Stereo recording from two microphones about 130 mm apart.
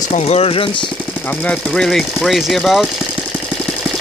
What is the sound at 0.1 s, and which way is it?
Speech, 55° left (ahead or behind).